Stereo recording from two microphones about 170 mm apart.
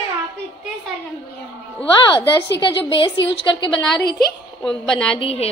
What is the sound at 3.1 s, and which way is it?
Speech, 90° left.